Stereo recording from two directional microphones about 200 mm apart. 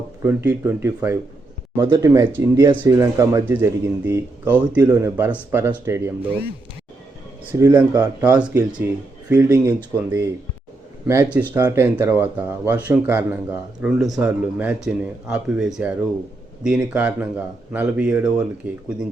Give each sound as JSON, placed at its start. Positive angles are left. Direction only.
{"t": 0.2, "sound": "speech", "side_deg": -10}
{"t": 7.5, "sound": "speech", "side_deg": -15}